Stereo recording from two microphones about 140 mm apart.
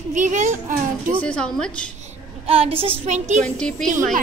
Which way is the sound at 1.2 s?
10° left (ahead or behind).